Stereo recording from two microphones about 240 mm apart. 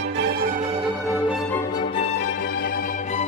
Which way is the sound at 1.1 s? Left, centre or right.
Centre.